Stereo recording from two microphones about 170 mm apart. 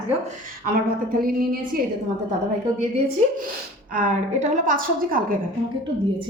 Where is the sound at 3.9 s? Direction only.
50° right (ahead or behind).